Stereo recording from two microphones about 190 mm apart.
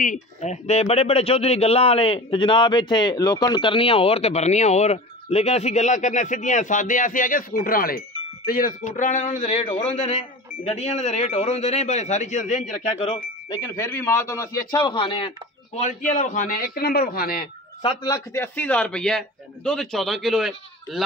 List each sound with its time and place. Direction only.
0.0 s speech: 40° left (ahead or behind)
13.5 s speech: 15° left (ahead or behind); by 17.5 s 50° left (ahead or behind)
17.8 s a man's voice: 20° left (ahead or behind); by 21.0 s centre (ahead or behind)